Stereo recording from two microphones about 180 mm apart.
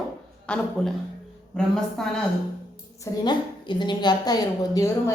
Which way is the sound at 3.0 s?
25° left (ahead or behind).